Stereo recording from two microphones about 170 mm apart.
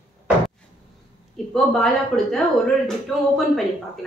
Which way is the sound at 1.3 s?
Centre (ahead or behind).